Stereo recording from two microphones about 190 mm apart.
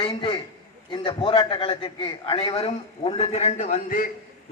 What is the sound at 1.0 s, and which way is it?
A man's voice, 25° left (ahead or behind).